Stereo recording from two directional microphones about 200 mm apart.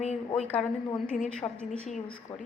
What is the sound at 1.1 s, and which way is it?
Speech, 5° left (ahead or behind).